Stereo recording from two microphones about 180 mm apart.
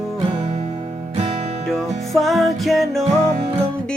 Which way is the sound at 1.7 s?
Centre (ahead or behind).